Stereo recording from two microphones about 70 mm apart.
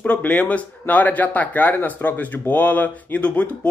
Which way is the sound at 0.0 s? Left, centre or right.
Centre.